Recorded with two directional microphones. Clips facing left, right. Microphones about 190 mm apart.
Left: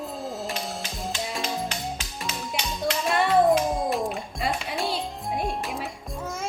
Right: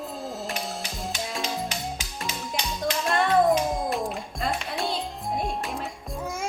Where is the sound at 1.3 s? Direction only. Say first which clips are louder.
Even; centre (ahead or behind).